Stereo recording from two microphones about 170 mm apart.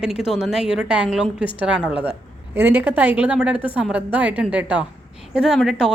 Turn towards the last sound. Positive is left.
turn(degrees=-5)  # may be behind; listen again after turning